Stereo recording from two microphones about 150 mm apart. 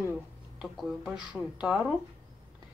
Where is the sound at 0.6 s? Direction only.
5° right (ahead or behind).